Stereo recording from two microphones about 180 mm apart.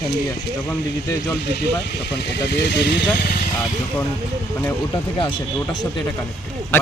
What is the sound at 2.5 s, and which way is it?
Speech, 70° left (ahead or behind).